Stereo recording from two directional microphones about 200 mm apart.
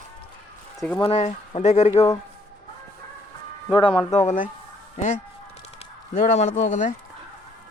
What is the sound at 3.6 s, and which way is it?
Speech, 25° left (ahead or behind).